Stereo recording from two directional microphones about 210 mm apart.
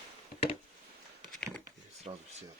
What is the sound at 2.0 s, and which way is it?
Speech, 30° right (ahead or behind).